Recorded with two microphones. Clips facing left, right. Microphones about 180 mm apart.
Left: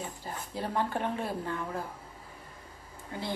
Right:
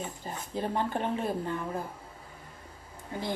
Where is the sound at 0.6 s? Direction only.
20° right (ahead or behind).